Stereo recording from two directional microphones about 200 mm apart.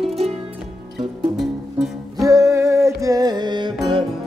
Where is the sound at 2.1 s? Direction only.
15° right (ahead or behind).